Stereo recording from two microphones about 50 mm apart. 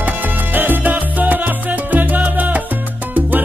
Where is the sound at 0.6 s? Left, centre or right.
Right.